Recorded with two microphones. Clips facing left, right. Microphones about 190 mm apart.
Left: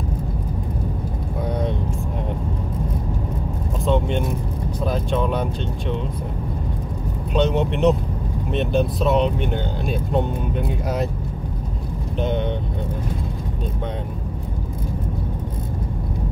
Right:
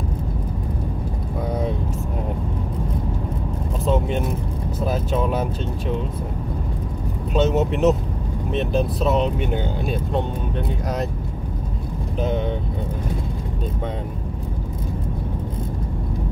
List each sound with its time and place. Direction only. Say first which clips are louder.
3.8 s vehicle: left 1 dB; 5° right (ahead or behind)
4.8 s speech: even; 5° right (ahead or behind)
7.3 s speech: right 1 dB; 5° right (ahead or behind)